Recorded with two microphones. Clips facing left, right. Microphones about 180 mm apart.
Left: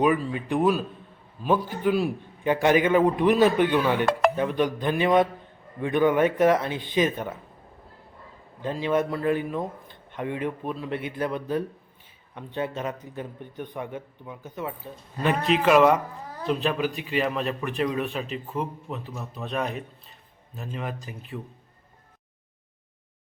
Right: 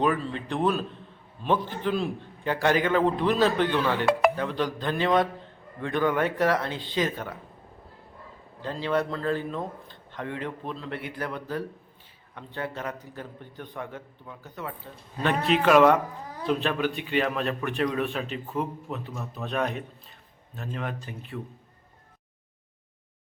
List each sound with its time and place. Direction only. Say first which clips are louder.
0.0 s a man's voice: left 3 dB; 10° left (ahead or behind)
8.6 s a man's voice: left 2 dB; 15° left (ahead or behind)
15.2 s a man's voice: left 1 dB; centre (ahead or behind)